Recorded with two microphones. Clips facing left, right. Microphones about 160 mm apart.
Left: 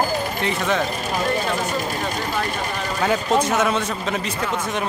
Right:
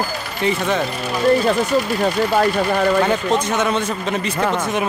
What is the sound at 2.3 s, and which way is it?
Speech, 45° right (ahead or behind).